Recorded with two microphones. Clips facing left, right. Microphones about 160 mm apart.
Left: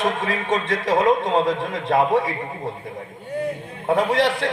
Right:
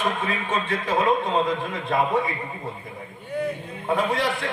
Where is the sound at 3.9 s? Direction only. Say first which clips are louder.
Left 5 dB; 75° left (ahead or behind).